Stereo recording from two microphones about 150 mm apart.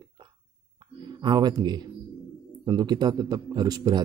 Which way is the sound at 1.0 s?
30° right (ahead or behind).